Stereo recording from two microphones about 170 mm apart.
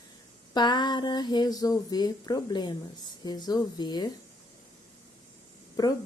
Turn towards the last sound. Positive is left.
turn(degrees=20)  # may be behind; listen again after turning